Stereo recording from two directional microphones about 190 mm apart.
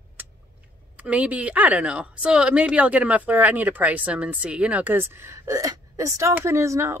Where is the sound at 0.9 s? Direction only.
5° right (ahead or behind).